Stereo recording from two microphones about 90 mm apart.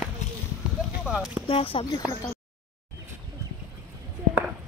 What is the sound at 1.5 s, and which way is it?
Speech, 90° left.